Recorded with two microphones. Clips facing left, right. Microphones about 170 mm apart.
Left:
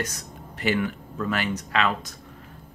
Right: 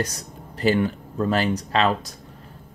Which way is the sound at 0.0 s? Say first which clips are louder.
Right 4 dB; 35° right (ahead or behind).